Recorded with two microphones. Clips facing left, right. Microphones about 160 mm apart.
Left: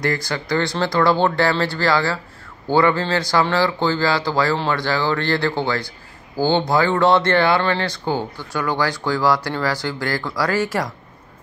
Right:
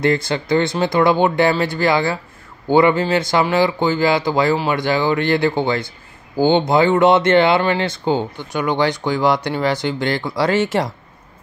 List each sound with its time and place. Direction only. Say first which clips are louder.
0.0 s speech: right 5 dB; 25° right (ahead or behind)